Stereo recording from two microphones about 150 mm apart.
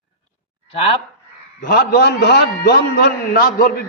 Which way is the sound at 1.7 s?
90° left.